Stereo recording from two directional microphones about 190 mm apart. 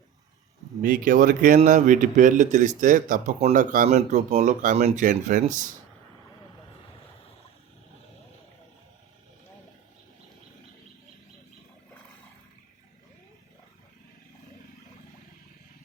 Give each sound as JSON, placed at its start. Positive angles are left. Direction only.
{"t": 0.8, "sound": "a man's voice", "side_deg": -45}